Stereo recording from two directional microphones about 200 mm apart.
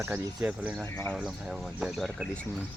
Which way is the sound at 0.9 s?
15° left (ahead or behind).